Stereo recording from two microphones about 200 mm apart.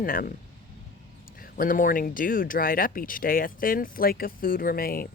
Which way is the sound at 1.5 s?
45° left (ahead or behind).